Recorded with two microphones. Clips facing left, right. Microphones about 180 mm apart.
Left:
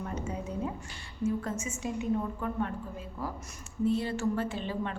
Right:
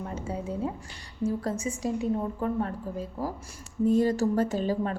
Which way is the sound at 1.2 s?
35° right (ahead or behind).